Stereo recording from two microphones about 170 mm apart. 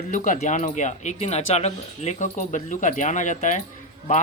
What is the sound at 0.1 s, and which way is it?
Speech, 45° left (ahead or behind).